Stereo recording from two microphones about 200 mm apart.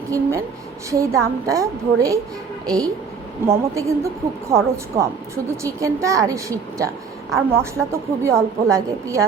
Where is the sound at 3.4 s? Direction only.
15° right (ahead or behind).